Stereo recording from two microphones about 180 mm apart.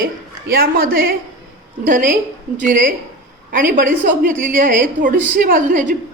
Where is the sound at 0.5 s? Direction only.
55° right (ahead or behind).